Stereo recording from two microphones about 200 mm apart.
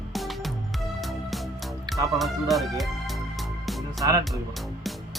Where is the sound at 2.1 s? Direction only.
Centre (ahead or behind).